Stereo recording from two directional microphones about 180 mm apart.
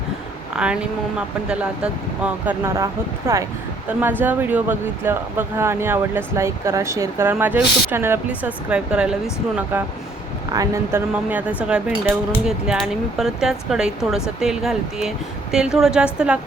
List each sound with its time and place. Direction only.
0.5 s speech: 5° right (ahead or behind)
10.5 s speech: 20° right (ahead or behind)
11.3 s speech: 10° right (ahead or behind)